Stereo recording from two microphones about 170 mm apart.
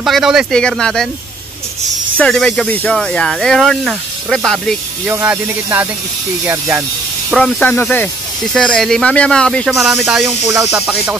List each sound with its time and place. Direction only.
0.0 s speech: centre (ahead or behind)
2.1 s speech: 5° left (ahead or behind)
5.0 s speech: 10° right (ahead or behind)
7.2 s speech: 5° left (ahead or behind)